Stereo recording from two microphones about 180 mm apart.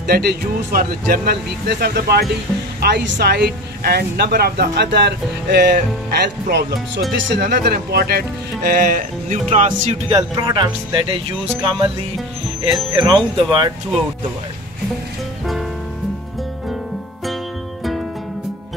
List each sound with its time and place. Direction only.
0.0 s speech: 60° right (ahead or behind); by 9.7 s 40° right (ahead or behind)
9.7 s speech: 25° right (ahead or behind)
12.9 s speech: 25° right (ahead or behind)